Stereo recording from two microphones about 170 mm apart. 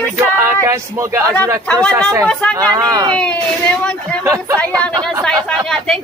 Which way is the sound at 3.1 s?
5° left (ahead or behind).